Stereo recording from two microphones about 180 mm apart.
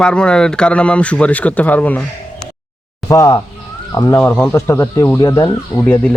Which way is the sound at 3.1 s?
15° left (ahead or behind).